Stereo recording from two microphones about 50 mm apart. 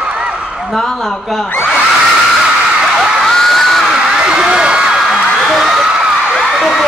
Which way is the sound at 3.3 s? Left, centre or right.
Centre.